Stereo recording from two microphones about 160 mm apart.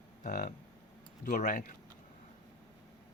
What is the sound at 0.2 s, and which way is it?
Speech, 55° left (ahead or behind).